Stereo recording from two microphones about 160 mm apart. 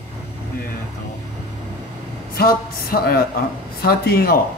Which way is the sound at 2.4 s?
70° left (ahead or behind).